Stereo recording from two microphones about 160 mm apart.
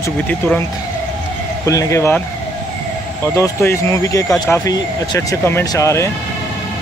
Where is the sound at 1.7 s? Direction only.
20° left (ahead or behind).